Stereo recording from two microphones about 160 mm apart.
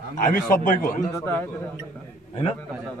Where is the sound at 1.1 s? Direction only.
15° left (ahead or behind).